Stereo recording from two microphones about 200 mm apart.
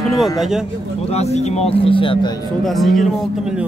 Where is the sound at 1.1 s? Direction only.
30° left (ahead or behind).